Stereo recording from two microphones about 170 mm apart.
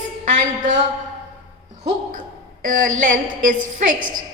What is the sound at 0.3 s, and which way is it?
Speech, 50° right (ahead or behind).